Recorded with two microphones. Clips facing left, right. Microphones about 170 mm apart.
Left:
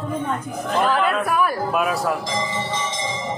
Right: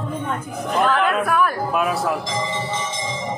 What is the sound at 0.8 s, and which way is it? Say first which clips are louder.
Speech: right 1 dB; 5° left (ahead or behind).